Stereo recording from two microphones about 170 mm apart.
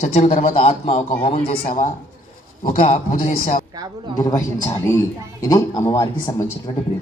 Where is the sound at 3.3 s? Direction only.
45° left (ahead or behind).